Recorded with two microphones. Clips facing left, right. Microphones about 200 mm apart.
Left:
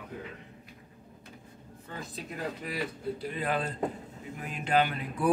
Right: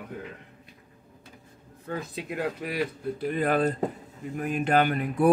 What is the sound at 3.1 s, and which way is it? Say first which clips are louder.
Speech: right 9 dB; 55° right (ahead or behind).